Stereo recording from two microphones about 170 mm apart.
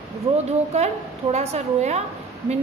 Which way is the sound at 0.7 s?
40° right (ahead or behind).